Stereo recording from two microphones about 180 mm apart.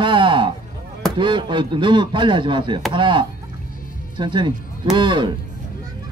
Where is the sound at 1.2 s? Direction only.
25° right (ahead or behind).